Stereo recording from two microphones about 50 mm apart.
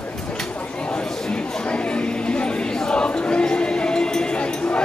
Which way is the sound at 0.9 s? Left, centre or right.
Centre.